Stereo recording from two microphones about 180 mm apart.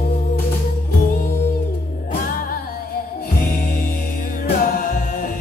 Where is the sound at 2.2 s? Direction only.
50° left (ahead or behind).